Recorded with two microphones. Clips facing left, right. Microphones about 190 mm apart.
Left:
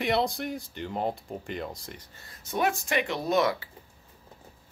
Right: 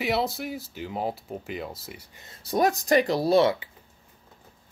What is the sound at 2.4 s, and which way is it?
Speech, 35° right (ahead or behind).